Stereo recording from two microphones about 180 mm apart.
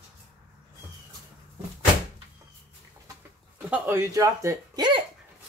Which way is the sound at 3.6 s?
10° right (ahead or behind).